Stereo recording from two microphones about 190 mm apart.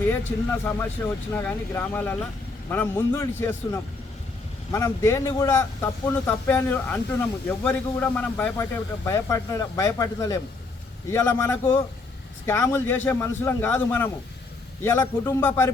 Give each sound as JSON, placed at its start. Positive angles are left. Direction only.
{"t": 0.1, "sound": "speech", "side_deg": 10}